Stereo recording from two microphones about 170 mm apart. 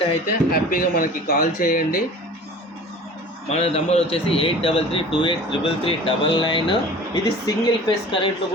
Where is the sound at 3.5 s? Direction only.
40° left (ahead or behind).